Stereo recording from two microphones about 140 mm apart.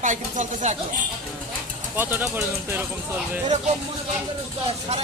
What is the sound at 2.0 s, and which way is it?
Speech, 15° right (ahead or behind).